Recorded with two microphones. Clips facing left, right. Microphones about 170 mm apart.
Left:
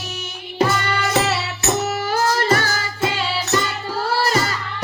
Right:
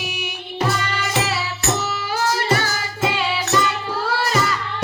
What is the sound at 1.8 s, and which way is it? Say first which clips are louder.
Music: left 3 dB; 50° left (ahead or behind).